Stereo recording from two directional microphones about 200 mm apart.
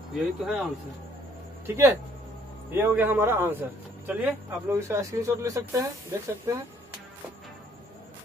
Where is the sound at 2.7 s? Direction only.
10° right (ahead or behind).